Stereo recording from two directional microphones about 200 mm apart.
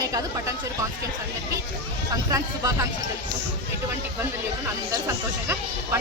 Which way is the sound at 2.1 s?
15° right (ahead or behind).